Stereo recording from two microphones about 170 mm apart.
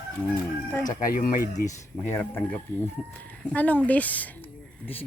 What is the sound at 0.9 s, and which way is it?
Speech, 50° left (ahead or behind).